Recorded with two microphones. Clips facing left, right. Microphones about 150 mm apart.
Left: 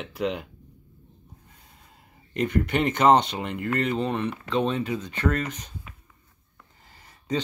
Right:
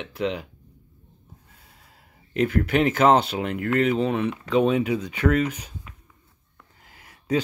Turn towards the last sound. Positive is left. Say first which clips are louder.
# right 4 dB
turn(degrees=-10)  # may be behind; listen again after turning